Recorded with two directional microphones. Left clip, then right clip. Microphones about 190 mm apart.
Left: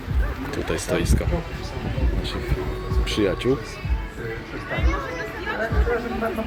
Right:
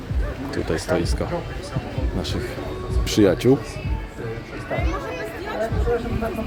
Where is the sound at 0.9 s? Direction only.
15° right (ahead or behind).